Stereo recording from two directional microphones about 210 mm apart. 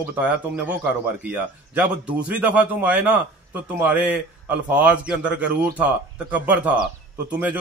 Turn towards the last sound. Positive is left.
turn(degrees=-5)  # may be behind; listen again after turning